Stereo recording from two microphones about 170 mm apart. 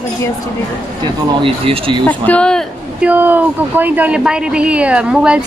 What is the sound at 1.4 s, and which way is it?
Speech, 30° right (ahead or behind).